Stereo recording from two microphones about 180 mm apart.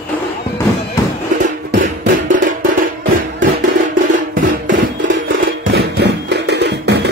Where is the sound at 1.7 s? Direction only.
50° right (ahead or behind).